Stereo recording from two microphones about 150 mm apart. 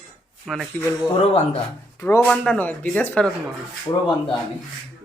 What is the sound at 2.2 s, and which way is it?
Speech, 5° left (ahead or behind).